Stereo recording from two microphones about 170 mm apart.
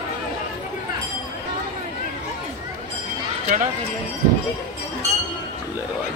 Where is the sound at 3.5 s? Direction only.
50° right (ahead or behind).